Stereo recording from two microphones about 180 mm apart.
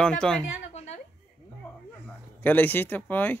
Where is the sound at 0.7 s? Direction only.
35° left (ahead or behind).